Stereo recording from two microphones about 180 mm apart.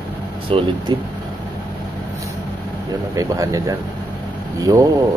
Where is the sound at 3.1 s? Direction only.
20° right (ahead or behind).